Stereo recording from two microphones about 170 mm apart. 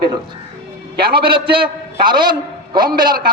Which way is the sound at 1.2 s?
30° right (ahead or behind).